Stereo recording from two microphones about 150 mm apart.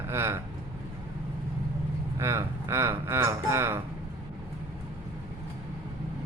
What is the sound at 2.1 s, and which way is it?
Speech, 20° right (ahead or behind).